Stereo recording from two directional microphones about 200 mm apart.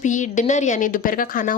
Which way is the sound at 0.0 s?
40° left (ahead or behind).